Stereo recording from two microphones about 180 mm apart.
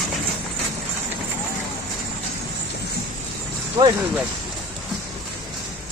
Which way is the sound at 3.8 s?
20° right (ahead or behind).